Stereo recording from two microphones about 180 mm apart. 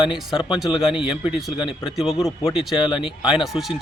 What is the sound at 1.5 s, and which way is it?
Speech, 25° left (ahead or behind).